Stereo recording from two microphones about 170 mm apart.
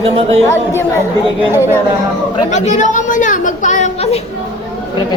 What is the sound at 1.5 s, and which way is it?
Speech, 15° right (ahead or behind).